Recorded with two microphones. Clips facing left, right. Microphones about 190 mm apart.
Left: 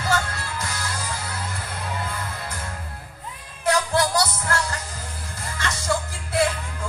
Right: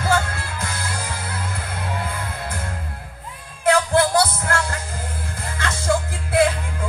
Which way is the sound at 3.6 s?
55° right (ahead or behind).